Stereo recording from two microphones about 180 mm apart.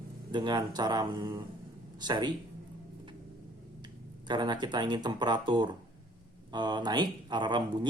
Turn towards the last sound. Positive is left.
turn(degrees=-25)  # may be behind; listen again after turning